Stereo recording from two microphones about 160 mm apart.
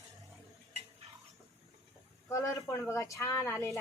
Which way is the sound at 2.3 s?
20° left (ahead or behind).